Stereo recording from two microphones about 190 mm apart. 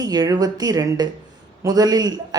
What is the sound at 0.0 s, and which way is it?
A woman's voice, 20° right (ahead or behind).